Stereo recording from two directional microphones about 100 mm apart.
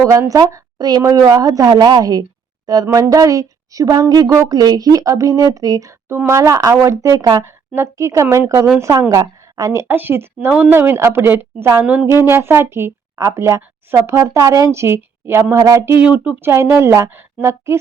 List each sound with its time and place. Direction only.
0.0 s speech: 35° right (ahead or behind)
9.8 s speech: 20° right (ahead or behind)
16.0 s speech: 15° right (ahead or behind)